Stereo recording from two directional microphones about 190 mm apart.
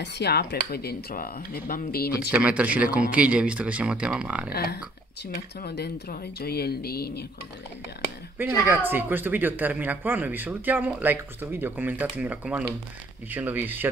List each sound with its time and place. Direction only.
0.0 s speech: 60° left (ahead or behind)
2.3 s speech: 5° right (ahead or behind)
4.5 s speech: 55° left (ahead or behind)
8.6 s speech: 10° right (ahead or behind)